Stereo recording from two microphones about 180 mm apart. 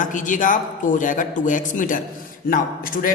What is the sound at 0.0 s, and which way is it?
A man's voice, 45° left (ahead or behind).